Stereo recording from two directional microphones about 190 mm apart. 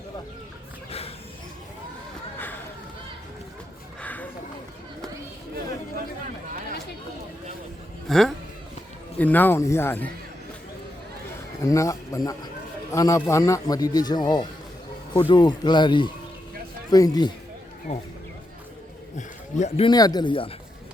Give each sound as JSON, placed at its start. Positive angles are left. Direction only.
{"t": 0.9, "sound": "wild animals", "side_deg": 30}
{"t": 4.0, "sound": "a sound", "side_deg": 10}
{"t": 8.0, "sound": "a sound", "side_deg": 0}
{"t": 9.1, "sound": "speech", "side_deg": 10}
{"t": 11.6, "sound": "a man's voice", "side_deg": 15}
{"t": 17.9, "sound": "speech", "side_deg": 35}
{"t": 19.1, "sound": "a man's voice", "side_deg": 40}